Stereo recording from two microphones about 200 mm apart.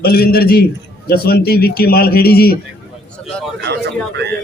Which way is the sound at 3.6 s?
60° right (ahead or behind).